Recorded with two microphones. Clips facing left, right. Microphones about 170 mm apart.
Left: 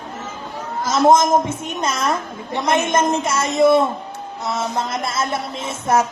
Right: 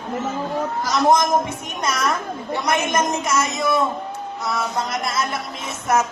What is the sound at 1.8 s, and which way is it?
Music, 25° left (ahead or behind).